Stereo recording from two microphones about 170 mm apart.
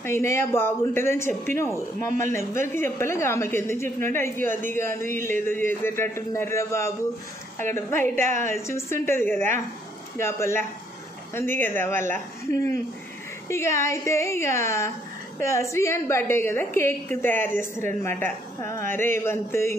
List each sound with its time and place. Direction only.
0.0 s a woman's voice: 15° left (ahead or behind)
13.5 s a woman's voice: 15° left (ahead or behind)